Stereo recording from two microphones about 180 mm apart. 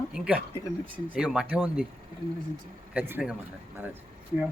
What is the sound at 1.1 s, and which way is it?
Speech, 5° right (ahead or behind).